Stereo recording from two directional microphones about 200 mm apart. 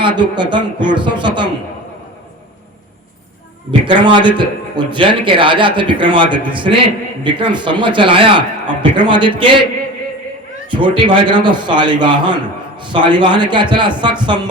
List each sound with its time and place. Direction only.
0.2 s a man's voice: 20° right (ahead or behind)
3.8 s a man's voice: 25° right (ahead or behind)
10.7 s a man's voice: 25° right (ahead or behind)